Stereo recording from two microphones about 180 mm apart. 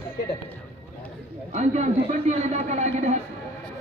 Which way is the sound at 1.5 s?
40° right (ahead or behind).